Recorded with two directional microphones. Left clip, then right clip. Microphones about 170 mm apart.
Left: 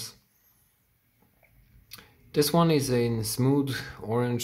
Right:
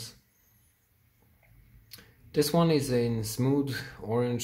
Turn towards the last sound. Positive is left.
turn(degrees=20)  # may be behind; listen again after turning